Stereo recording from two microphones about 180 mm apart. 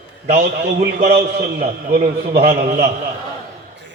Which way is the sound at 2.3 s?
55° right (ahead or behind).